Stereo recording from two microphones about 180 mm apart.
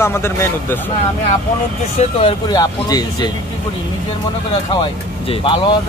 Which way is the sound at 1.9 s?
30° left (ahead or behind).